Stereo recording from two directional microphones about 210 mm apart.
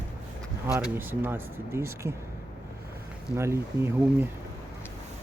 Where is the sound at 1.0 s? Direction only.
10° right (ahead or behind).